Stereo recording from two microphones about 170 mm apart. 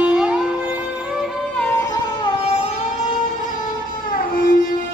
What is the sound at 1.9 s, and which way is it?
Music, 25° left (ahead or behind).